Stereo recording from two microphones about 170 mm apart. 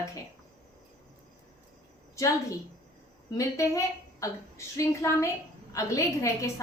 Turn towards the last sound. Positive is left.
turn(degrees=20)  # may be behind; listen again after turning